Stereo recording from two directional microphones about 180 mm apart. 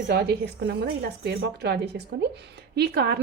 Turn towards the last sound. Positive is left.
turn(degrees=-65)  # may be behind; listen again after turning